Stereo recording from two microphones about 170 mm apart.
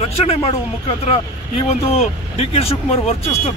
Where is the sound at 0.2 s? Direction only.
35° left (ahead or behind).